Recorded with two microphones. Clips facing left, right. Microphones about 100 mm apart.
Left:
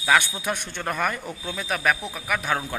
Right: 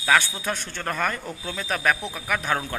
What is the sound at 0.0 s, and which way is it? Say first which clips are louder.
A man's voice: even; 15° left (ahead or behind).